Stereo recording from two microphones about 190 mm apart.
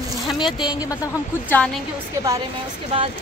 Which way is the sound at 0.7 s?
20° left (ahead or behind).